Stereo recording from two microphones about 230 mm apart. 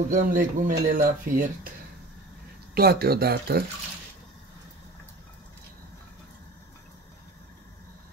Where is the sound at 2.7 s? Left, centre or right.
Right.